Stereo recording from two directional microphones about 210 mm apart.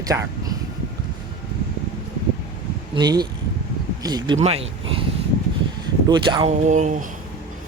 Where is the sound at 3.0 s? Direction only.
20° right (ahead or behind).